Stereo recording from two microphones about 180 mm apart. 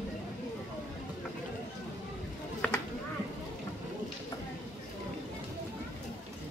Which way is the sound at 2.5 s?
5° left (ahead or behind).